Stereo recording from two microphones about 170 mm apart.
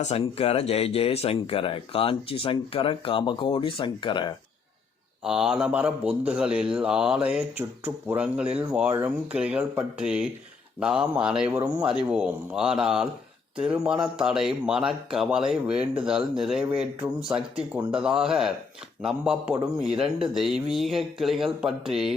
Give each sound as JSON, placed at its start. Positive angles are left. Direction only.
{"t": 0.0, "sound": "speech", "side_deg": 40}
{"t": 5.2, "sound": "speech", "side_deg": -5}